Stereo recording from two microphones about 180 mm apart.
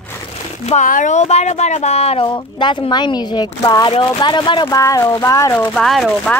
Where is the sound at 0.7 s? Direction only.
45° left (ahead or behind); by 5.7 s 20° left (ahead or behind).